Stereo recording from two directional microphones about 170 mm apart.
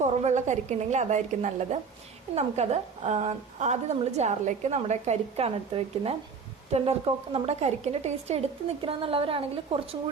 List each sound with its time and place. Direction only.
0.0 s a woman's voice: 40° right (ahead or behind)